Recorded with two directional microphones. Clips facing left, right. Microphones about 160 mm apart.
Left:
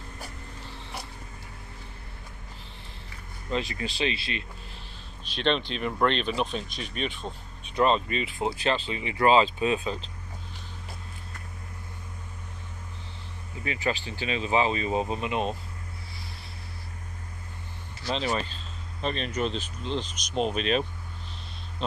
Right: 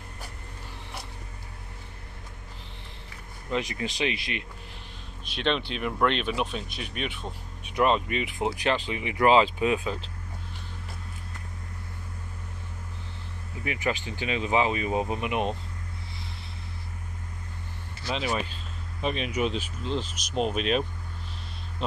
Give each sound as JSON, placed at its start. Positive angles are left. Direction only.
{"t": 3.5, "sound": "speech", "side_deg": -20}
{"t": 9.6, "sound": "speech", "side_deg": 20}
{"t": 13.7, "sound": "speech", "side_deg": -20}
{"t": 15.1, "sound": "speech", "side_deg": 25}
{"t": 18.0, "sound": "speech", "side_deg": -10}